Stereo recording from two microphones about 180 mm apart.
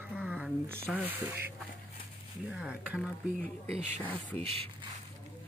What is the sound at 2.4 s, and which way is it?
Speech, 5° right (ahead or behind).